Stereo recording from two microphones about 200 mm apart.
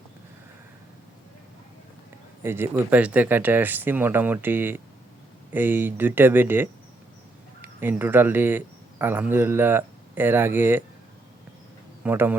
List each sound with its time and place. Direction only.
2.4 s speech: 10° right (ahead or behind)
12.0 s speech: 10° right (ahead or behind)